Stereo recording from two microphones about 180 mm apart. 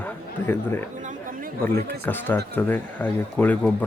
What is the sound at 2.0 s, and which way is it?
Speech, 10° left (ahead or behind).